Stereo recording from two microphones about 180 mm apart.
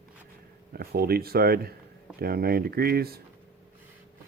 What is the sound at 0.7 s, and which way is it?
Speech, 55° right (ahead or behind).